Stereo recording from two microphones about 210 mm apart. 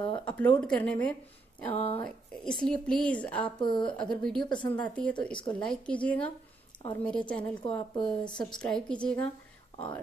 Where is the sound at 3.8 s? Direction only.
5° left (ahead or behind).